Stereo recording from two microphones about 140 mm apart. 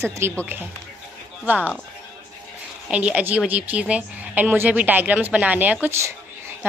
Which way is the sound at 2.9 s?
10° right (ahead or behind).